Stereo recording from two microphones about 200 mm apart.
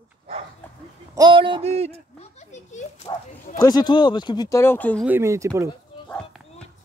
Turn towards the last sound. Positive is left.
turn(degrees=5)  # may be behind; listen again after turning